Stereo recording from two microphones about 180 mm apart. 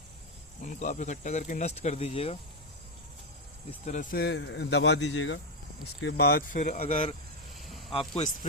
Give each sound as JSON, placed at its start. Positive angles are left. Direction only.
{"t": 0.6, "sound": "speech", "side_deg": 45}
{"t": 3.7, "sound": "speech", "side_deg": 40}
{"t": 4.1, "sound": "speech", "side_deg": 70}
{"t": 6.0, "sound": "speech", "side_deg": 70}
{"t": 7.5, "sound": "a sound", "side_deg": 0}